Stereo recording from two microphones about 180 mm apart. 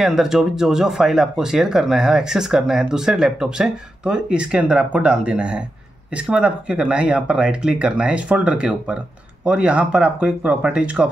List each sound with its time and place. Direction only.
0.0 s speech: centre (ahead or behind)